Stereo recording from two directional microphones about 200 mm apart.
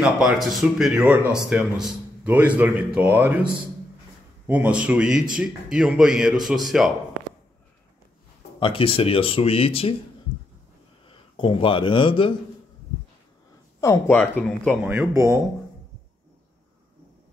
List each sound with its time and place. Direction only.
0.0 s speech: centre (ahead or behind)
8.5 s speech: 25° left (ahead or behind)
11.1 s speech: 25° left (ahead or behind)
14.0 s speech: 5° left (ahead or behind)
14.9 s speech: 10° right (ahead or behind)